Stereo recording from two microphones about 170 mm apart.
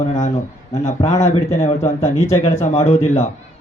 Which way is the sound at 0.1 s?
45° left (ahead or behind).